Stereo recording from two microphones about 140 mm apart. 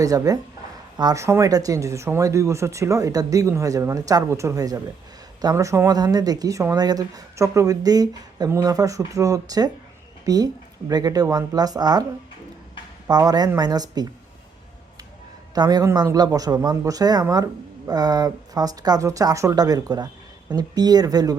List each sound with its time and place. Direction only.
0.0 s a man's voice: 25° right (ahead or behind)
13.1 s a man's voice: 30° right (ahead or behind)
15.5 s a man's voice: 30° right (ahead or behind)